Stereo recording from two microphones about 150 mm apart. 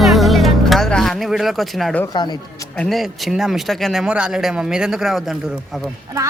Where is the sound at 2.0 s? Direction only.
30° left (ahead or behind).